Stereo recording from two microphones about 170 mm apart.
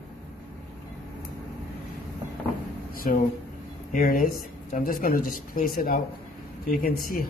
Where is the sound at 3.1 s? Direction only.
55° left (ahead or behind).